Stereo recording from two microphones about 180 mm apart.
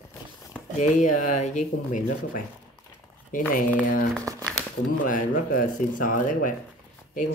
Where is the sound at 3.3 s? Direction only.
50° left (ahead or behind).